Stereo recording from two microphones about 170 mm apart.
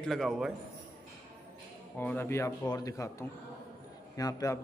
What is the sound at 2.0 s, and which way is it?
Speech, 10° left (ahead or behind).